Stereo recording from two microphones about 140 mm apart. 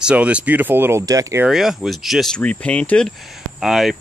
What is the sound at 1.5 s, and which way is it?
Speech, centre (ahead or behind).